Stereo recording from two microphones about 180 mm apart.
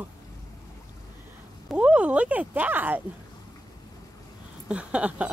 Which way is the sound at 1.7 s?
5° right (ahead or behind).